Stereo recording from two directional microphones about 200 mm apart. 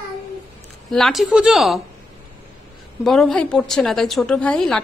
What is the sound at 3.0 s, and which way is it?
A woman's voice, centre (ahead or behind).